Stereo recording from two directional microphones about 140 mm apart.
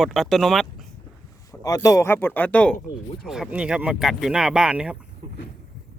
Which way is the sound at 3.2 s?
5° right (ahead or behind).